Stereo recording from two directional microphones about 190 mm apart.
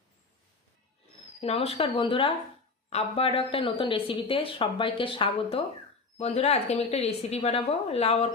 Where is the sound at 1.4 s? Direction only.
30° left (ahead or behind).